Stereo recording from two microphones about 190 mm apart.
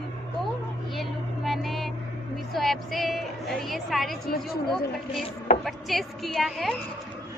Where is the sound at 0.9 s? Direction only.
Centre (ahead or behind).